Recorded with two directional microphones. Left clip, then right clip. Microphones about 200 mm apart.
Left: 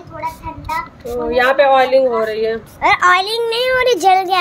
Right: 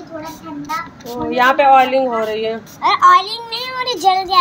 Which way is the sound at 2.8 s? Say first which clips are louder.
Right 1 dB; 50° left (ahead or behind).